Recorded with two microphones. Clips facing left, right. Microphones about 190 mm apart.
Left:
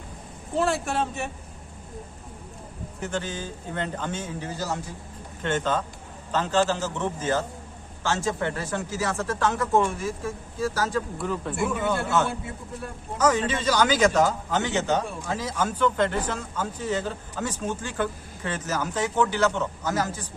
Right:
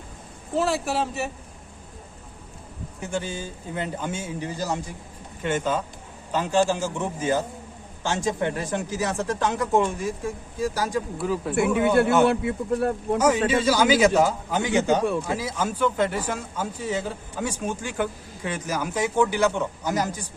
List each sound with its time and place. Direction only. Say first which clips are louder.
0.5 s speech: right 1 dB; centre (ahead or behind)
3.0 s speech: right 1 dB; 10° right (ahead or behind)
13.1 s speech: right 1 dB; 10° right (ahead or behind)